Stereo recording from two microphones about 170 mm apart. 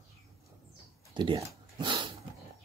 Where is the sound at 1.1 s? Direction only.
25° right (ahead or behind).